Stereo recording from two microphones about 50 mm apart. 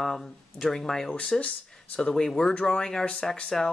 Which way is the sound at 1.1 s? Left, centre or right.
Left.